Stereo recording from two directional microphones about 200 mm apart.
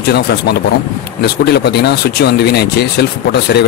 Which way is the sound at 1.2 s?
55° left (ahead or behind).